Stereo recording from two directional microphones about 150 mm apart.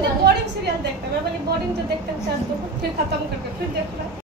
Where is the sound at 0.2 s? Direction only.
90° right.